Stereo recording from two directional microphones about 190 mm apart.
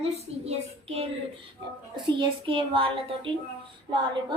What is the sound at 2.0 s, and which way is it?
Speech, 25° right (ahead or behind).